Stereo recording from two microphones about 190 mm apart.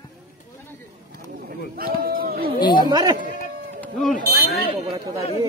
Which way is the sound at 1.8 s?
50° right (ahead or behind).